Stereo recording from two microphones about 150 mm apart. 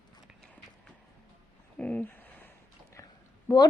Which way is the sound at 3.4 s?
25° left (ahead or behind).